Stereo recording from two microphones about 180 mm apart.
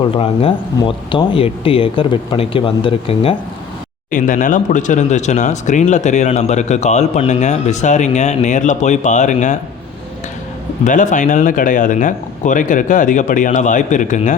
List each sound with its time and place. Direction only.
0.0 s speech: 30° left (ahead or behind)
4.1 s speech: 45° left (ahead or behind)
10.8 s speech: 45° left (ahead or behind)